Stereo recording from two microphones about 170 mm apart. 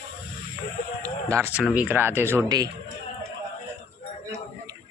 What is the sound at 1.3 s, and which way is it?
Speech, 15° right (ahead or behind).